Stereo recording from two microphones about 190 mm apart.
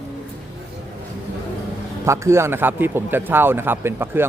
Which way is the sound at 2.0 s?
15° right (ahead or behind).